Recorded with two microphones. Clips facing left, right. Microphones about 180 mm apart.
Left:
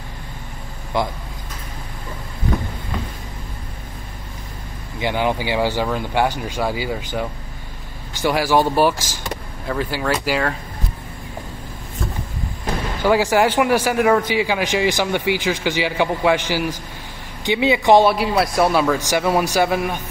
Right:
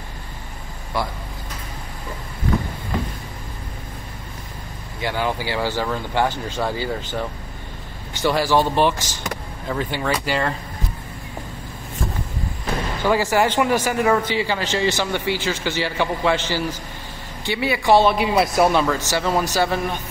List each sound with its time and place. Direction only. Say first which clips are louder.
0.9 s speech: left 4 dB; 20° left (ahead or behind)
5.0 s a man's voice: left 3 dB; 20° left (ahead or behind)
13.0 s a man's voice: left 3 dB; 10° left (ahead or behind)
18.1 s a man's voice: even; centre (ahead or behind)